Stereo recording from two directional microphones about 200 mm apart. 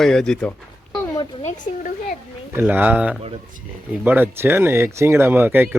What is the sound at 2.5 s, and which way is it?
Speech, 10° right (ahead or behind).